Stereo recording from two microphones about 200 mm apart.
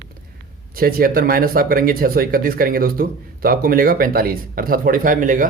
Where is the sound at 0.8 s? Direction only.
50° right (ahead or behind).